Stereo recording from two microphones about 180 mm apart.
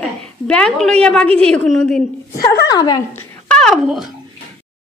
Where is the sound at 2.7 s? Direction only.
20° left (ahead or behind); by 4.1 s centre (ahead or behind).